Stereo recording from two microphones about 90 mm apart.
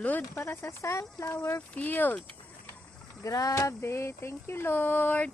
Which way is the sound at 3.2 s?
40° left (ahead or behind).